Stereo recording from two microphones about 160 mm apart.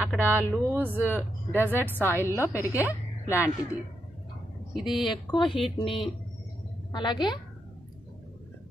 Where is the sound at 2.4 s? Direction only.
15° right (ahead or behind).